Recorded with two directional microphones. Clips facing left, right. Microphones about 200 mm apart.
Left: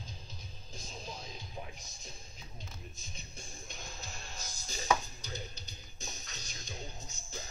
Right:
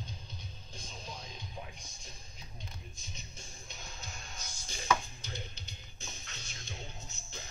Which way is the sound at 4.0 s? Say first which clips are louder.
Left 1 dB; 35° left (ahead or behind).